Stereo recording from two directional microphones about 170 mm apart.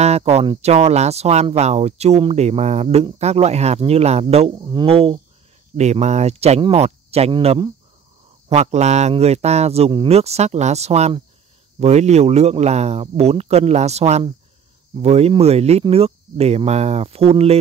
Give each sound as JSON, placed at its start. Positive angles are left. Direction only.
{"t": 0.0, "sound": "speech", "side_deg": -40}
{"t": 4.6, "sound": "speech", "side_deg": -25}